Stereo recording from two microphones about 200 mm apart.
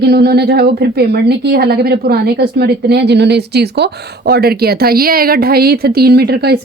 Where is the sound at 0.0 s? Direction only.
55° right (ahead or behind).